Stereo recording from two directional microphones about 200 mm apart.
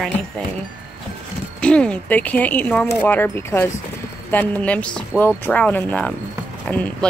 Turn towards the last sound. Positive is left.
turn(degrees=5)  # may be behind; listen again after turning